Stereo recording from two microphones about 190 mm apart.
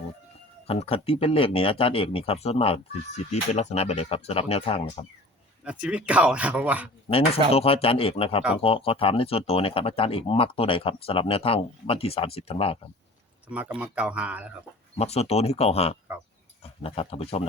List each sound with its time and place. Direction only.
0.7 s speech: 30° left (ahead or behind)
5.6 s speech: 5° right (ahead or behind)
7.5 s speech: 30° left (ahead or behind)
13.5 s speech: 5° right (ahead or behind)
14.9 s speech: 35° left (ahead or behind)